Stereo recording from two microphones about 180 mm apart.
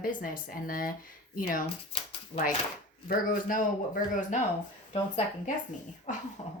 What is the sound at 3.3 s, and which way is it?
Speech, 50° left (ahead or behind).